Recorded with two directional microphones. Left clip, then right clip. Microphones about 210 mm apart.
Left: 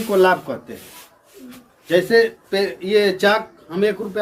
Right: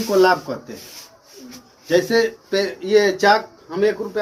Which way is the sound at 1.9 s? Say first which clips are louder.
Left 2 dB; 5° left (ahead or behind).